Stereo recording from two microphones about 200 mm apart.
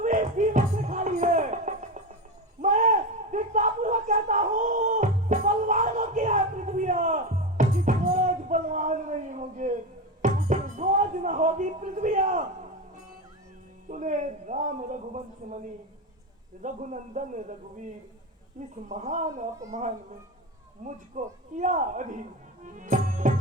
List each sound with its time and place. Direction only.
0.0 s music: 40° right (ahead or behind)
2.6 s a sound: 40° right (ahead or behind)
10.2 s music: 40° right (ahead or behind)
13.8 s a sound: 40° right (ahead or behind)
16.6 s speech: 40° right (ahead or behind)
22.6 s music: 40° right (ahead or behind)